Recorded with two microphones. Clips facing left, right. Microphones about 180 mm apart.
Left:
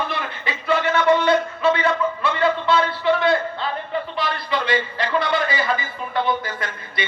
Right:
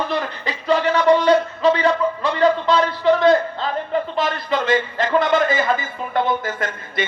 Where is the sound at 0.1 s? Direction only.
40° right (ahead or behind).